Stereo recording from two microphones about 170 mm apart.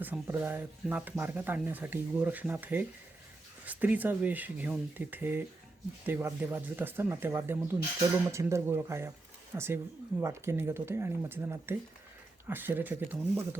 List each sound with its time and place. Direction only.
0.0 s speech: 10° right (ahead or behind)